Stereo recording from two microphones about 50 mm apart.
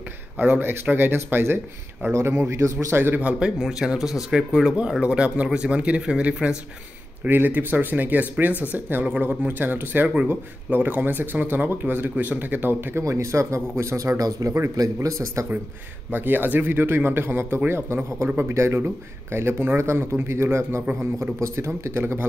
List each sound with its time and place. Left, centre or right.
0.5 s a man's voice: right
2.1 s speech: right
2.9 s a man's voice: right
3.2 s speech: right
5.0 s speech: right
7.2 s a man's voice: right
13.0 s speech: right
16.1 s a man's voice: right
19.8 s speech: right
21.2 s a man's voice: right